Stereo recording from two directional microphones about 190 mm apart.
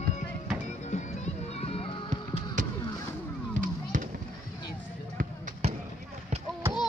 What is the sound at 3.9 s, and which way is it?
Fireworks, 45° right (ahead or behind).